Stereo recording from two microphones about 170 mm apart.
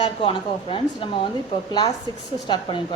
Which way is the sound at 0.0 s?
30° left (ahead or behind).